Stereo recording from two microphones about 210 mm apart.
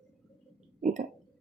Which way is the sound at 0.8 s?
35° right (ahead or behind).